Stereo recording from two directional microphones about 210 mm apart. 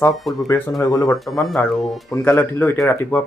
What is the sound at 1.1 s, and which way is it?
Speech, centre (ahead or behind).